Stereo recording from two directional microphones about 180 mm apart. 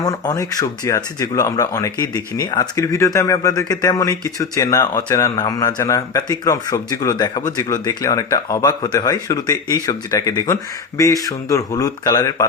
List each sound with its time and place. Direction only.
0.0 s speech: 20° left (ahead or behind)